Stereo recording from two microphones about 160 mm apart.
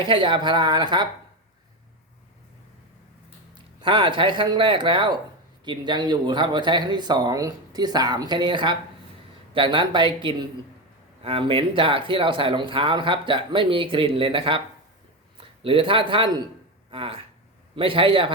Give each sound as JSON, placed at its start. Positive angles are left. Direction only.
{"t": 0.0, "sound": "speech", "side_deg": -30}
{"t": 3.5, "sound": "a man's voice", "side_deg": -30}